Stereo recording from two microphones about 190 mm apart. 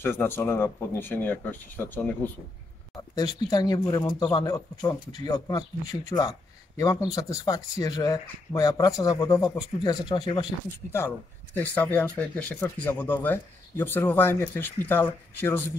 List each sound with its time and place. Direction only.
0.0 s speech: 10° left (ahead or behind)
3.2 s speech: 20° left (ahead or behind)
10.9 s speech: 10° left (ahead or behind)